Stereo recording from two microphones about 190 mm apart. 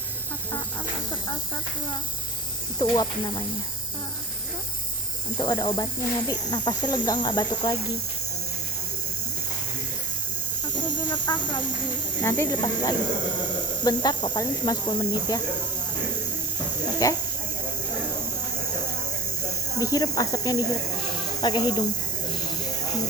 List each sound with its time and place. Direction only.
2.7 s speech: 20° left (ahead or behind)
5.4 s speech: 20° left (ahead or behind)
10.8 s speech: 25° left (ahead or behind)
16.8 s hiss: 20° left (ahead or behind)
19.8 s speech: 20° left (ahead or behind)